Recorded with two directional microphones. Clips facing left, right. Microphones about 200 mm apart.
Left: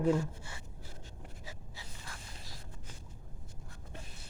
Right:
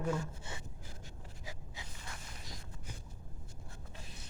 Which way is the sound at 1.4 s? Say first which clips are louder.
Right 1 dB; 15° right (ahead or behind).